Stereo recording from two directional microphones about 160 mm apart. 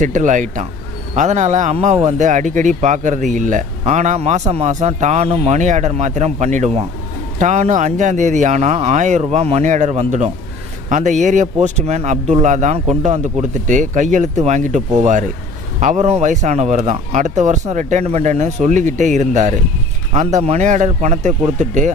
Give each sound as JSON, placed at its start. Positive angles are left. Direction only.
{"t": 0.0, "sound": "speech", "side_deg": -50}